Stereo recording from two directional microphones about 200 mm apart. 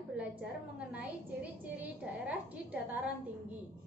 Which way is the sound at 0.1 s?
5° right (ahead or behind).